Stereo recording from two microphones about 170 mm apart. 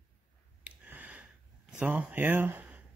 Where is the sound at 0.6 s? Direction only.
10° right (ahead or behind).